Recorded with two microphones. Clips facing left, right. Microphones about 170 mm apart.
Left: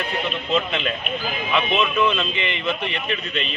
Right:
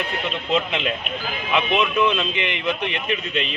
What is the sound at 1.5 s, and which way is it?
Speech, 15° right (ahead or behind).